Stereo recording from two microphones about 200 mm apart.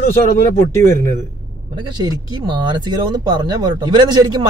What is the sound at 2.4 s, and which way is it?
Speech, 25° right (ahead or behind).